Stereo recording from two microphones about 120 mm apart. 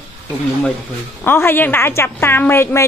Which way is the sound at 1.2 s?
20° left (ahead or behind).